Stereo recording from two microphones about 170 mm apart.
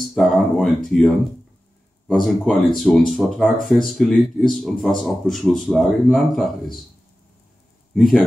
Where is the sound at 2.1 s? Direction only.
Centre (ahead or behind).